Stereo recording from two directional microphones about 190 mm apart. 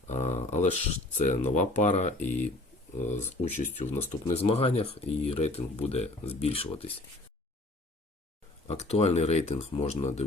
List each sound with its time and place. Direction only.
0.1 s speech: 35° left (ahead or behind)
8.6 s speech: 35° left (ahead or behind)